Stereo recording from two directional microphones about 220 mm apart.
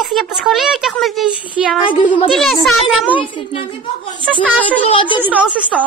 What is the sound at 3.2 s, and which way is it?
A woman's voice, 20° left (ahead or behind).